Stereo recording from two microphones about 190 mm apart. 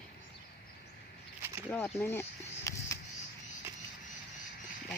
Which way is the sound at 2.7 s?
15° left (ahead or behind).